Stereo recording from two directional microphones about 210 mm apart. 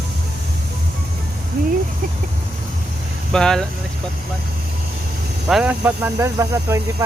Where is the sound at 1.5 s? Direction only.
45° right (ahead or behind).